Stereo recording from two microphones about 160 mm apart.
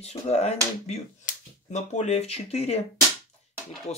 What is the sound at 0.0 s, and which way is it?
Speech, 45° left (ahead or behind).